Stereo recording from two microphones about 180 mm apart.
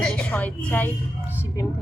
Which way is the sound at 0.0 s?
5° left (ahead or behind).